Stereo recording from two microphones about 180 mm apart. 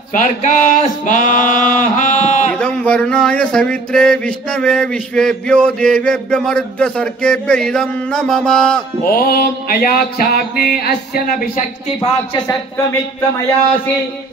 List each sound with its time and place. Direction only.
0.1 s a sound: 45° left (ahead or behind)
2.6 s speech: 5° left (ahead or behind)
9.0 s music: 55° left (ahead or behind)
12.0 s speech: 20° left (ahead or behind)